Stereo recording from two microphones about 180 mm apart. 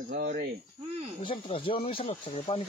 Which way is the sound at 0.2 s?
60° right (ahead or behind).